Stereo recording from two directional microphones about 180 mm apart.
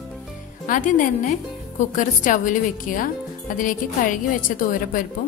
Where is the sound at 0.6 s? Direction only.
45° left (ahead or behind).